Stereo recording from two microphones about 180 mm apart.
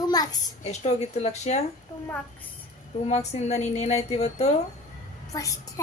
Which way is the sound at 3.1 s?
35° left (ahead or behind).